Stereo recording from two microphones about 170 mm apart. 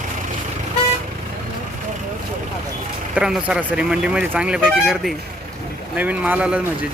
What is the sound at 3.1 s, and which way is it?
Speech, 5° right (ahead or behind).